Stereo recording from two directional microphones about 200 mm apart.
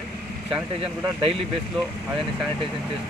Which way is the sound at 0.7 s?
30° right (ahead or behind).